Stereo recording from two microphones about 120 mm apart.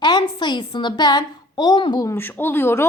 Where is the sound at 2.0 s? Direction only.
20° left (ahead or behind).